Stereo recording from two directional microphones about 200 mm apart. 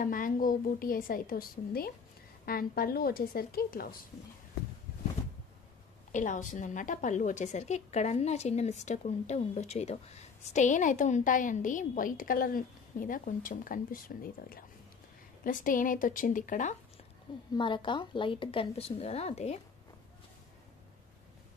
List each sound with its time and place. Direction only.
0.0 s a woman's voice: 45° left (ahead or behind)
6.1 s a woman's voice: 40° left (ahead or behind)
17.6 s a woman's voice: 25° left (ahead or behind)